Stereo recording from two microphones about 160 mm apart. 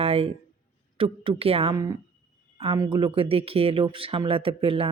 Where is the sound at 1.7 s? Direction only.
25° right (ahead or behind).